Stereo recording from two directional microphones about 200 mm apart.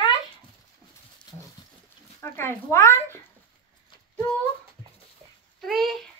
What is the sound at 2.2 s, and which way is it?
Speech, 10° left (ahead or behind).